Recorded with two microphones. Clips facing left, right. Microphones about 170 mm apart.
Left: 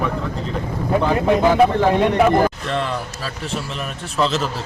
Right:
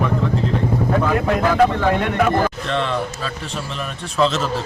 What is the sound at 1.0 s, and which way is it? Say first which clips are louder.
Speech: left 2 dB; 25° left (ahead or behind).